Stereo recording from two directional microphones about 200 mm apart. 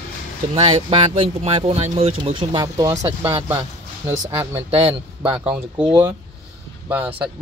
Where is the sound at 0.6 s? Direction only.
30° right (ahead or behind); by 6.0 s 5° right (ahead or behind).